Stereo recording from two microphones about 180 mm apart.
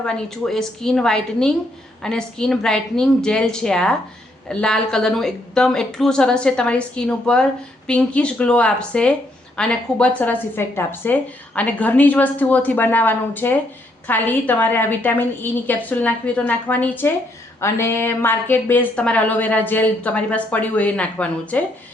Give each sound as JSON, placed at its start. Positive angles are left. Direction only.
{"t": 0.0, "sound": "a woman's voice", "side_deg": 0}